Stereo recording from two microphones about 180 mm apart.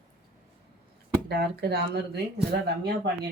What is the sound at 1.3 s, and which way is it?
Speech, 65° right (ahead or behind).